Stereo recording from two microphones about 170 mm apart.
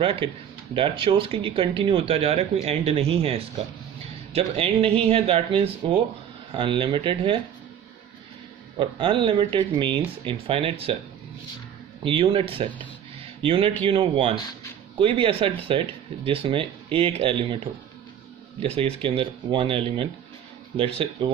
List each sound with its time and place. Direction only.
0.0 s speech: 30° right (ahead or behind)
8.7 s speech: 30° right (ahead or behind)
12.0 s speech: 30° right (ahead or behind)